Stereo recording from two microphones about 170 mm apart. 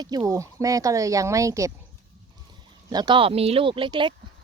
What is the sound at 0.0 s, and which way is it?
Speech, 25° right (ahead or behind).